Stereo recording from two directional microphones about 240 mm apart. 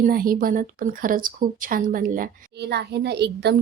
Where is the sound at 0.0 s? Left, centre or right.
Right.